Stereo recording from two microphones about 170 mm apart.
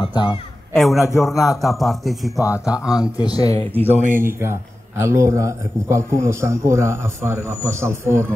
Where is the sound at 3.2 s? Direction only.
20° left (ahead or behind).